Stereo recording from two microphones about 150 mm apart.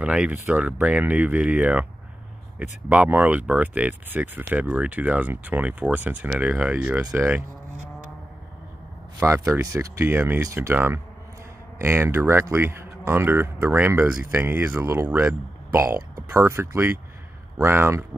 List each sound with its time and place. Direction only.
0.0 s speech: 10° right (ahead or behind)
7.7 s vehicle: 55° right (ahead or behind)
9.2 s speech: 20° right (ahead or behind)